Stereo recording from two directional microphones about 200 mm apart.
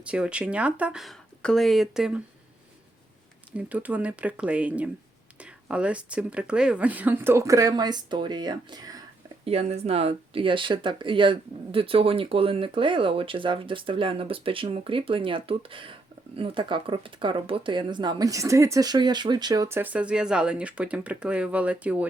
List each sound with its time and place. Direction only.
0.0 s speech: 5° right (ahead or behind)
3.5 s speech: 5° right (ahead or behind)
9.4 s speech: 30° right (ahead or behind); by 22.0 s 5° right (ahead or behind)